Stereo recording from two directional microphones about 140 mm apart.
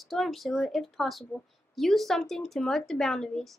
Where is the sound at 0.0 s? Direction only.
Centre (ahead or behind).